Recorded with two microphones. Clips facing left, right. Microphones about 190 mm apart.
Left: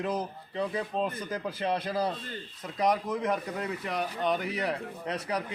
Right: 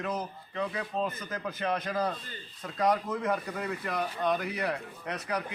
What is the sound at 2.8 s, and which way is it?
Speech, 15° left (ahead or behind).